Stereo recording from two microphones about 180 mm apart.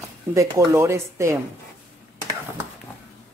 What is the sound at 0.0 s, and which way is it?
Speech, 15° right (ahead or behind).